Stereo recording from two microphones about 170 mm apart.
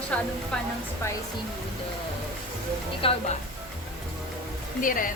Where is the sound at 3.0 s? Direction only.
30° left (ahead or behind).